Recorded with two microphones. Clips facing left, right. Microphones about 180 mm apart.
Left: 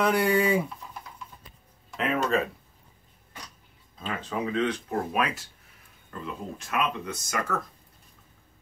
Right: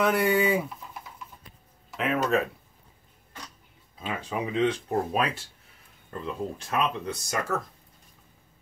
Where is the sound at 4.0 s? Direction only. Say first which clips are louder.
Even; 10° right (ahead or behind).